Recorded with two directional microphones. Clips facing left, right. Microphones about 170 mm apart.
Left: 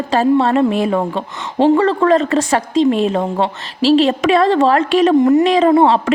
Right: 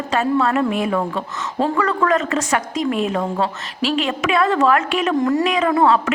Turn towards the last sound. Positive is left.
turn(degrees=30)  # may be behind; listen again after turning